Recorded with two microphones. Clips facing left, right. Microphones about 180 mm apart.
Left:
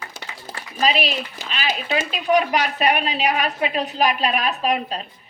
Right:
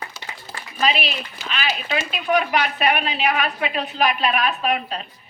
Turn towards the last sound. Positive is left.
turn(degrees=35)  # may be behind; listen again after turning